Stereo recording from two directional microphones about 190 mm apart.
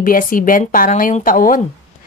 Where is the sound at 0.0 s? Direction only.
45° left (ahead or behind).